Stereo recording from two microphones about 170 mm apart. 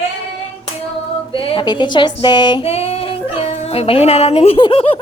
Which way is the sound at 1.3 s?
30° left (ahead or behind).